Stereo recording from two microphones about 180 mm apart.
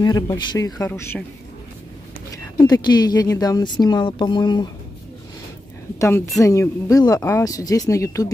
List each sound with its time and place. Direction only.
0.0 s speech: 25° left (ahead or behind)
2.3 s speech: 20° left (ahead or behind)
5.9 s a woman's voice: 15° left (ahead or behind)